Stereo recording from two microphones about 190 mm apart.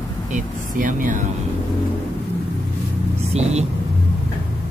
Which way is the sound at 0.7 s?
45° right (ahead or behind).